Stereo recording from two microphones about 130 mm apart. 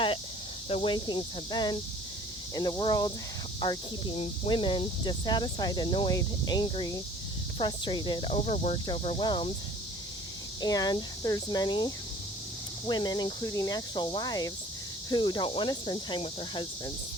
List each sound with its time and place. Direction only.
0.7 s speech: 50° left (ahead or behind)
0.9 s speech: 35° left (ahead or behind)
8.4 s speech: 60° left (ahead or behind)
9.2 s speech: 35° left (ahead or behind)
10.6 s speech: 30° left (ahead or behind)